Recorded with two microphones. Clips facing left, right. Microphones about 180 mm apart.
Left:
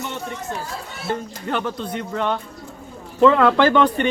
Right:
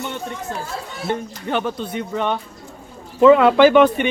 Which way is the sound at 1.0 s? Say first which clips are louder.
Right 1 dB; 20° right (ahead or behind).